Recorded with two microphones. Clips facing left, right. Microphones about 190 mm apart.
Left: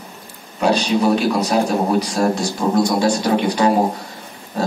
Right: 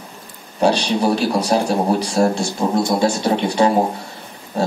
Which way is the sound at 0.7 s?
30° right (ahead or behind).